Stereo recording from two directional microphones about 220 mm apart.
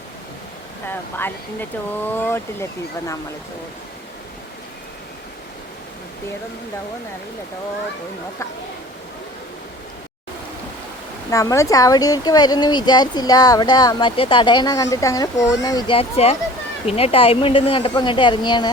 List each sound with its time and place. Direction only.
0.9 s speech: 10° left (ahead or behind)
11.3 s a woman's voice: 15° left (ahead or behind)